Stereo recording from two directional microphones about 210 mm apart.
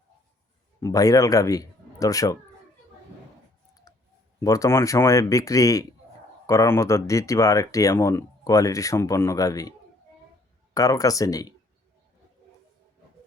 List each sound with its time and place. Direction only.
0.8 s speech: 15° left (ahead or behind)
3.9 s clicking: 15° left (ahead or behind)
4.4 s speech: 15° left (ahead or behind)
10.8 s speech: 15° left (ahead or behind)